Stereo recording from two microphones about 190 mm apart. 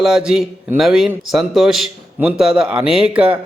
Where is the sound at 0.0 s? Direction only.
5° right (ahead or behind).